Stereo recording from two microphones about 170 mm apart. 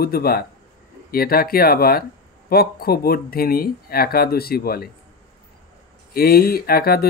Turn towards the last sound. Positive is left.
turn(degrees=65)  # may be behind; listen again after turning